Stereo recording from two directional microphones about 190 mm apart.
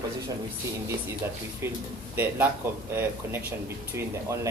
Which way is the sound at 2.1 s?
10° right (ahead or behind).